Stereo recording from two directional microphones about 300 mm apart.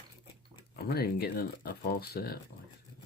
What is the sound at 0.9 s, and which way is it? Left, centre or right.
Speech, left.